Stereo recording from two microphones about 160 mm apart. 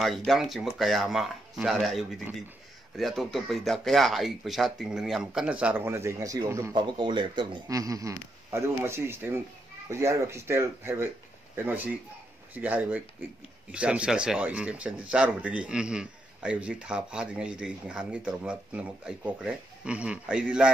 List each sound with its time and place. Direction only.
0.0 s speech: centre (ahead or behind); by 6.7 s 20° right (ahead or behind)
6.7 s a man's voice: 30° right (ahead or behind); by 20.7 s 5° right (ahead or behind)